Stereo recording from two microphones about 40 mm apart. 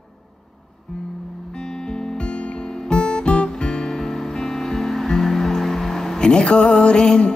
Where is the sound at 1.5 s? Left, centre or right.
Centre.